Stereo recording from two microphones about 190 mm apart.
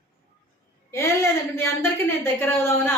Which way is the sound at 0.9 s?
15° left (ahead or behind).